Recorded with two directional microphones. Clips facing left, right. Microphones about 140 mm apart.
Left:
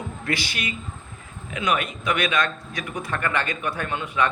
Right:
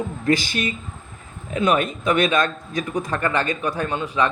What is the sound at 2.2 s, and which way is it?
Speech, 45° right (ahead or behind).